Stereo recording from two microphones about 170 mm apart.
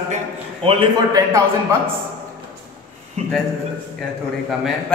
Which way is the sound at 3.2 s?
40° right (ahead or behind).